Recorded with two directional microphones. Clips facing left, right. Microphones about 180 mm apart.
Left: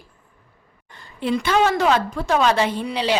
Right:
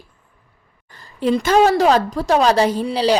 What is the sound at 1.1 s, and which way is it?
A woman's voice, 40° right (ahead or behind).